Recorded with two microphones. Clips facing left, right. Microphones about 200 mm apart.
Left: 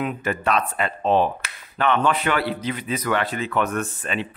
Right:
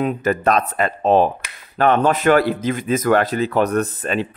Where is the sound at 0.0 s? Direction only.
40° right (ahead or behind).